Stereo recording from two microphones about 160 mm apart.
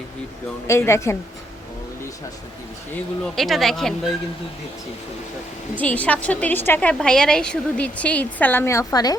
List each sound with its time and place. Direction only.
0.7 s a woman's voice: 15° left (ahead or behind)
3.3 s speech: centre (ahead or behind)
5.8 s a woman's voice: 10° left (ahead or behind)